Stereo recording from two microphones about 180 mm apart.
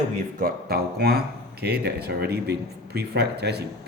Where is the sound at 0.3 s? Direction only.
55° right (ahead or behind).